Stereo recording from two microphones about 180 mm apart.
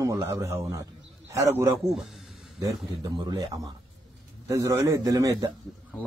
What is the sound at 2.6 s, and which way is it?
Speech, 20° right (ahead or behind).